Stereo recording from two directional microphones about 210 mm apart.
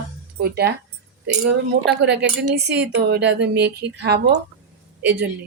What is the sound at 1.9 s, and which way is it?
A woman's voice, 55° right (ahead or behind).